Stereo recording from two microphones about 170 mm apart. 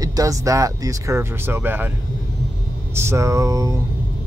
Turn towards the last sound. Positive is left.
turn(degrees=-20)  # may be behind; listen again after turning